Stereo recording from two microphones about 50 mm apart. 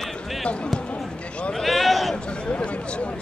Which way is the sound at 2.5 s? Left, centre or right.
Left.